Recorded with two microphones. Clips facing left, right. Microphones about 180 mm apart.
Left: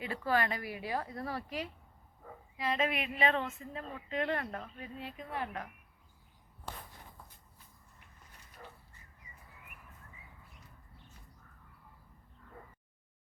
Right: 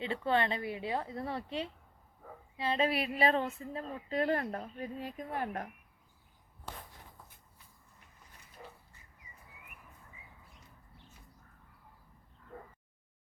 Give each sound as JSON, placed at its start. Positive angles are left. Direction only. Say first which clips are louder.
{"t": 0.0, "sound": "a woman's voice", "louder": "right 1 dB", "side_deg": -25}
{"t": 8.6, "sound": "dog", "louder": "right 1 dB", "side_deg": -15}